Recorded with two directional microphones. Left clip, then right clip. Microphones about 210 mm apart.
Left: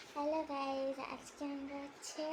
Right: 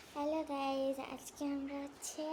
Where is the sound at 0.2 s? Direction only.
10° right (ahead or behind).